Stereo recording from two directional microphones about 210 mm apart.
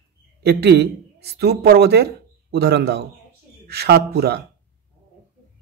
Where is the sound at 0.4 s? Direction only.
50° right (ahead or behind).